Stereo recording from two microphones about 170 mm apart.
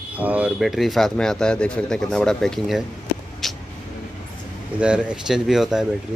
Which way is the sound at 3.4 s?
Centre (ahead or behind).